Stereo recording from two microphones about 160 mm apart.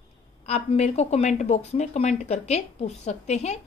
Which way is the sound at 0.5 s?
40° left (ahead or behind).